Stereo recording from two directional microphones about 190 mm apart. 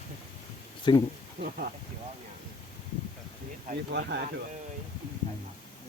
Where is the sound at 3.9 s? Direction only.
60° right (ahead or behind).